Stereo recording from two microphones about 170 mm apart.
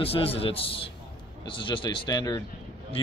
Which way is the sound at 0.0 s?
35° left (ahead or behind).